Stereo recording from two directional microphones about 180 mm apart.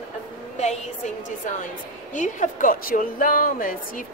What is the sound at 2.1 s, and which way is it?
A woman's voice, 45° left (ahead or behind).